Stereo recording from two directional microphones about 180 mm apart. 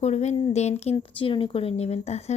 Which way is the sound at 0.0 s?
40° left (ahead or behind).